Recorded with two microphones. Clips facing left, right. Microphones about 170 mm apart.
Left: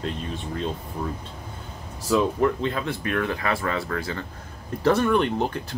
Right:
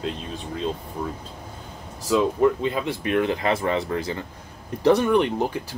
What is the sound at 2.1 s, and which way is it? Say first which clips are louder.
Speech: right 2 dB; 10° right (ahead or behind).